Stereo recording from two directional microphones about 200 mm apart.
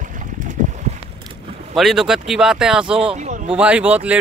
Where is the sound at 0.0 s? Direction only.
40° right (ahead or behind).